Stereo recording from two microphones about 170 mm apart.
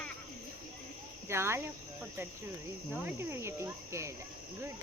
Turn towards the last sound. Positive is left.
turn(degrees=-15)  # may be behind; listen again after turning